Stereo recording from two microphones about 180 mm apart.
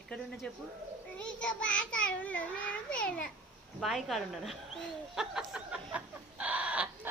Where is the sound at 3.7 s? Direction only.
Centre (ahead or behind).